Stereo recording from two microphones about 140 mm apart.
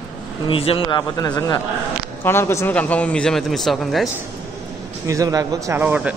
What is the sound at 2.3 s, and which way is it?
Speech, 15° left (ahead or behind).